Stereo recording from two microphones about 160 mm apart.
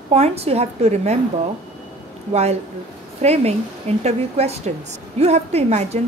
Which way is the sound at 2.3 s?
40° right (ahead or behind).